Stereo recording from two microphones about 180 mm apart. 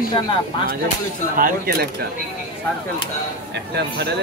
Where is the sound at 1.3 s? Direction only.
55° right (ahead or behind).